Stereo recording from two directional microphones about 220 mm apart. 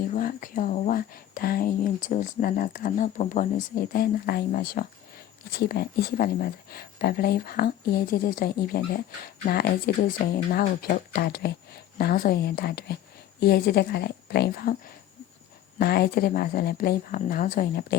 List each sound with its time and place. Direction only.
0.1 s speech: 40° left (ahead or behind)
15.8 s speech: 45° left (ahead or behind)